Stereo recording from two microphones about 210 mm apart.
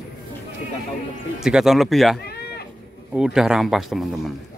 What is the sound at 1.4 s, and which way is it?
Speech, centre (ahead or behind).